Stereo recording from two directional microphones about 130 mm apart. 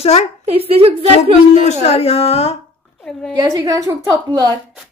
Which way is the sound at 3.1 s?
5° left (ahead or behind).